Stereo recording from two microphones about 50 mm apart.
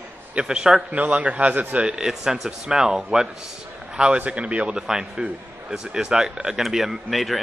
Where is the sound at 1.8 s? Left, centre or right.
Centre.